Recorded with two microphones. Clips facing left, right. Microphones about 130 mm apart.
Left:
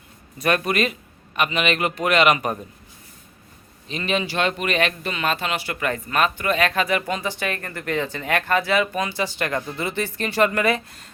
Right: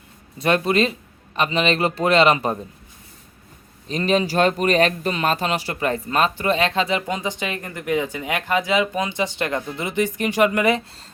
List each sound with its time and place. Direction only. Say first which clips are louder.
0.3 s a man's voice: right 3 dB; 25° right (ahead or behind)
3.8 s speech: right 5 dB; 40° right (ahead or behind); by 11.0 s 20° right (ahead or behind)